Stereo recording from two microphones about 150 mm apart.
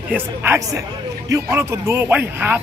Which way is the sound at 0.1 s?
10° right (ahead or behind).